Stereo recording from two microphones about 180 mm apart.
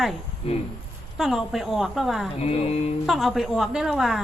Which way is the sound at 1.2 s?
Centre (ahead or behind).